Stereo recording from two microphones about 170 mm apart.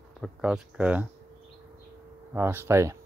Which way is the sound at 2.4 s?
15° right (ahead or behind).